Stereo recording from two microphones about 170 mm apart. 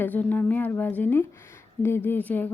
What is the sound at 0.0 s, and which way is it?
Speech, 10° left (ahead or behind).